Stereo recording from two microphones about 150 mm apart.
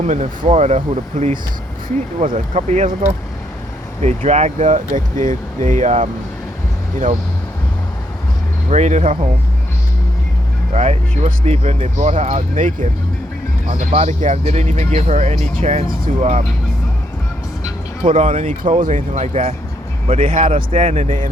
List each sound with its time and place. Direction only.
0.0 s speech: 50° right (ahead or behind)
1.2 s speech: 55° right (ahead or behind)
8.7 s speech: 50° right (ahead or behind)
10.7 s speech: 45° right (ahead or behind)
18.1 s speech: 50° right (ahead or behind)